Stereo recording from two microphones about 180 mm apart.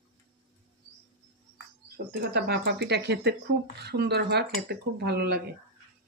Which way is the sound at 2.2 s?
65° right (ahead or behind).